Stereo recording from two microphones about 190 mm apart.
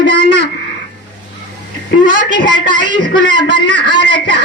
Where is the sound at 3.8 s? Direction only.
70° right (ahead or behind).